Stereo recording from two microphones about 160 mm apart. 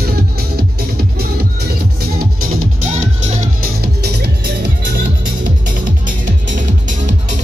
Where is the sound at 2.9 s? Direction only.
50° right (ahead or behind).